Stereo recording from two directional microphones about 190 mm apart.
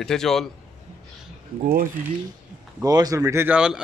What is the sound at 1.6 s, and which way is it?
Speech, 45° right (ahead or behind).